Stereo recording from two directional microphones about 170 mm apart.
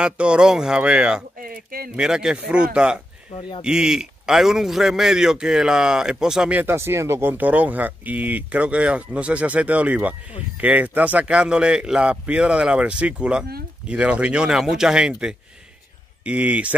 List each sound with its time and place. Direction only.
0.0 s a man's voice: 5° right (ahead or behind)
1.4 s speech: 60° right (ahead or behind)
2.0 s a man's voice: 5° right (ahead or behind)
3.3 s speech: 30° left (ahead or behind)
3.6 s a man's voice: 5° right (ahead or behind)